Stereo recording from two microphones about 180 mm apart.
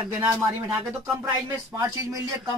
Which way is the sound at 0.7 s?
10° right (ahead or behind).